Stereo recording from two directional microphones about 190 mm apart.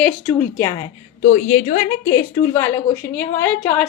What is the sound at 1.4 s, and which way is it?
Speech, 40° left (ahead or behind).